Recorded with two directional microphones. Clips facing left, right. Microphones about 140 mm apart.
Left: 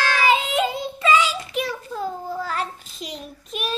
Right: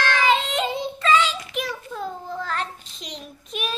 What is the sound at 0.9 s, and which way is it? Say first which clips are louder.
Child singing: left 1 dB; 10° left (ahead or behind).